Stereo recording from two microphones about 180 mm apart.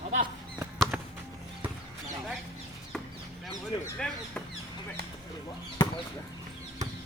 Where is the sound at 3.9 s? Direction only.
5° left (ahead or behind).